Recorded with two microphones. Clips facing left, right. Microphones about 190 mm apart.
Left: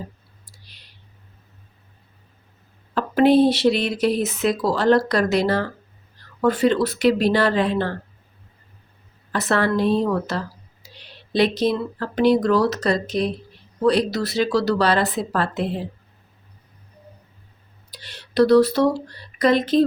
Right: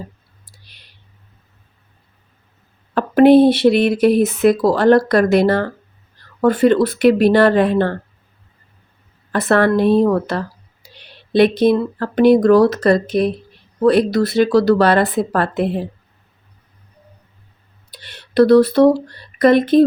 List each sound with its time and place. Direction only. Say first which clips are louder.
2.9 s speech: right 6 dB; 55° right (ahead or behind)
9.3 s speech: right 6 dB; 55° right (ahead or behind)
17.9 s speech: right 5 dB; 55° right (ahead or behind)